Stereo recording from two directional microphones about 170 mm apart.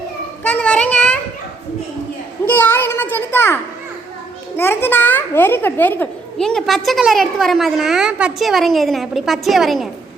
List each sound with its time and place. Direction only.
0.4 s a child's voice: 5° left (ahead or behind)
2.5 s a child's voice: 10° left (ahead or behind)